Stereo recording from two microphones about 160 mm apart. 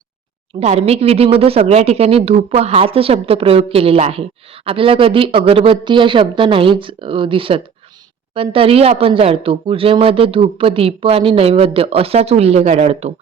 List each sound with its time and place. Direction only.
0.6 s speech: 40° right (ahead or behind)